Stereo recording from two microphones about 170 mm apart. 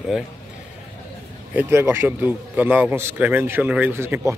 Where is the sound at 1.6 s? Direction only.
15° right (ahead or behind).